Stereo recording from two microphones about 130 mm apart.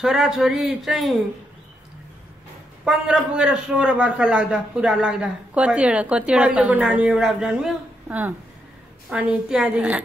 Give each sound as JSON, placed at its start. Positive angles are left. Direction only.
{"t": 0.0, "sound": "a man's voice", "side_deg": 0}
{"t": 2.8, "sound": "a man's voice", "side_deg": -5}